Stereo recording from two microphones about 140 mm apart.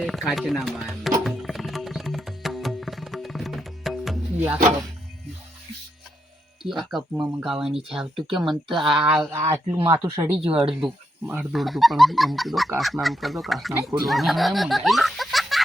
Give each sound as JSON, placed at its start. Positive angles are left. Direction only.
{"t": 0.0, "sound": "music", "side_deg": 0}
{"t": 4.4, "sound": "speech", "side_deg": -15}
{"t": 6.6, "sound": "speech", "side_deg": 0}
{"t": 9.3, "sound": "speech", "side_deg": -20}
{"t": 11.5, "sound": "speech", "side_deg": 0}